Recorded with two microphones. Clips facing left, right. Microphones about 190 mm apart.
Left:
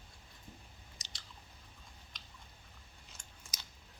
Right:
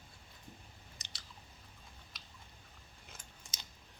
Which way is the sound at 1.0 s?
60° right (ahead or behind).